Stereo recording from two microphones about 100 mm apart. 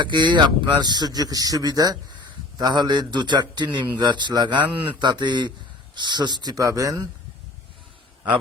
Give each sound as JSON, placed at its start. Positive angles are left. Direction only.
{"t": 0.0, "sound": "speech", "side_deg": -50}